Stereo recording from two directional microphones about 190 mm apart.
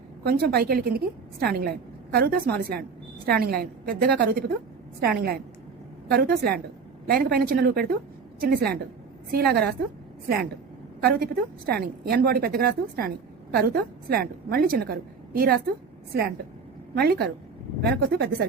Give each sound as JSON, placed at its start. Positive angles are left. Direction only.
{"t": 0.3, "sound": "a woman's voice", "side_deg": -55}
{"t": 16.9, "sound": "speech", "side_deg": -55}